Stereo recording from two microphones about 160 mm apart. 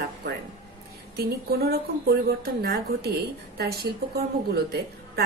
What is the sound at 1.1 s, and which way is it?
A woman's voice, 75° right (ahead or behind).